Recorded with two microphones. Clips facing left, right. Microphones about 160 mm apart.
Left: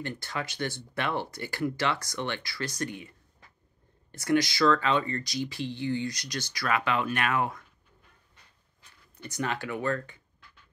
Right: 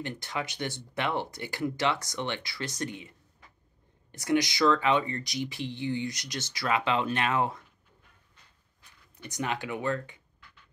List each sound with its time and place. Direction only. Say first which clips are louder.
0.0 s speech: even; 20° right (ahead or behind)
9.1 s speech: even; 15° right (ahead or behind)